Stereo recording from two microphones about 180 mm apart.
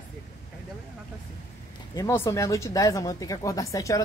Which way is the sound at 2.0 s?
15° left (ahead or behind).